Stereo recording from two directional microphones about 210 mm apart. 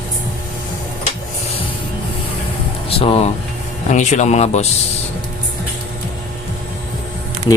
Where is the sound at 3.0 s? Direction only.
25° left (ahead or behind).